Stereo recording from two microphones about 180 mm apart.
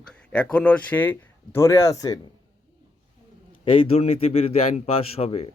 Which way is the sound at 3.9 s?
35° left (ahead or behind).